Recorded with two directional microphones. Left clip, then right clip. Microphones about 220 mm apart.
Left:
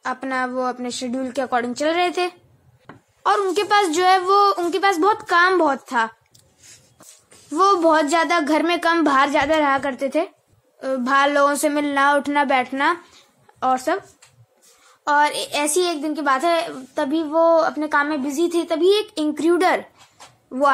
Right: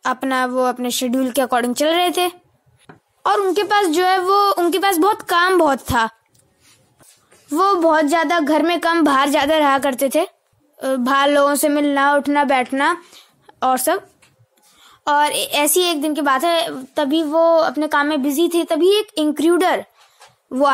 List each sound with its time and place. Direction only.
0.0 s a woman's voice: 40° right (ahead or behind)
7.4 s a woman's voice: 30° right (ahead or behind)
15.0 s a woman's voice: 35° right (ahead or behind)
20.4 s speech: 40° right (ahead or behind)